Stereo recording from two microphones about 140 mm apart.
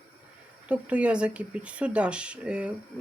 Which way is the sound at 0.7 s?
10° right (ahead or behind).